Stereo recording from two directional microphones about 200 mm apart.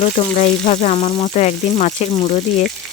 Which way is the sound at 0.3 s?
40° left (ahead or behind).